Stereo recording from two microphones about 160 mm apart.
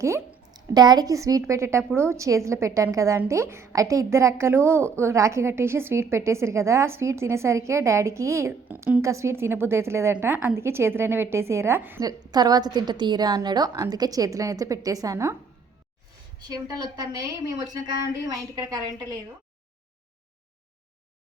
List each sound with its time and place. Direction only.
0.0 s a woman's voice: 15° right (ahead or behind)
12.0 s a woman's voice: 25° right (ahead or behind)
16.5 s a woman's voice: 25° right (ahead or behind)